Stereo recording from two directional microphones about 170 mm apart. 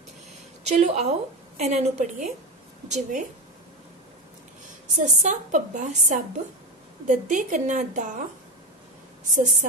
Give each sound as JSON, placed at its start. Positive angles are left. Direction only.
{"t": 0.7, "sound": "a woman's voice", "side_deg": -40}
{"t": 4.9, "sound": "a woman's voice", "side_deg": -45}
{"t": 9.3, "sound": "a woman's voice", "side_deg": -50}